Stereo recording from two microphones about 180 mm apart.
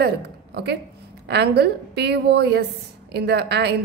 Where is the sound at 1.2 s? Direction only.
65° right (ahead or behind).